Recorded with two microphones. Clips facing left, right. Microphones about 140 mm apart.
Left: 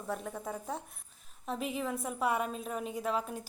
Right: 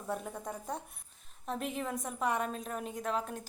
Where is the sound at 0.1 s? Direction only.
Centre (ahead or behind).